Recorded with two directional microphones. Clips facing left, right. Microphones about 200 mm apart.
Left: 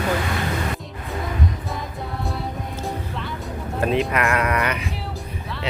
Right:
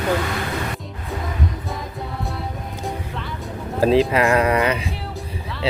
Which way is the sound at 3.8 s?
30° right (ahead or behind).